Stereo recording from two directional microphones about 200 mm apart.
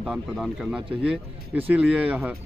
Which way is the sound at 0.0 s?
Centre (ahead or behind).